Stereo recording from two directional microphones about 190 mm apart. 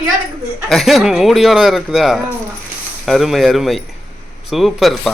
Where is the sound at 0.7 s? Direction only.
Centre (ahead or behind).